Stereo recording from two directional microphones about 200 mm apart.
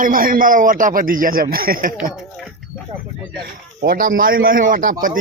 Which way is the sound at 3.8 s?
50° right (ahead or behind).